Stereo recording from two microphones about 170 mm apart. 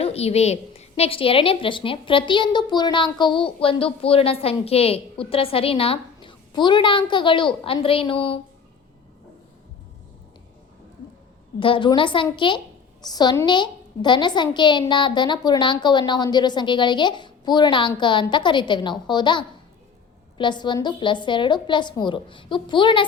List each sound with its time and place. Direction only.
0.0 s a woman's voice: 35° left (ahead or behind)
11.6 s a woman's voice: 30° left (ahead or behind)